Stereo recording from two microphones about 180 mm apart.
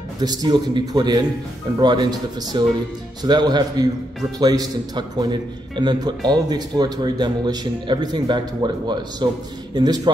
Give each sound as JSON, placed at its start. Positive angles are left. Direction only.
{"t": 0.2, "sound": "a man's voice", "side_deg": -20}